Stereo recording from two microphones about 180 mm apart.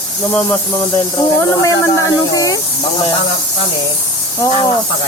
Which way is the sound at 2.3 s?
20° left (ahead or behind).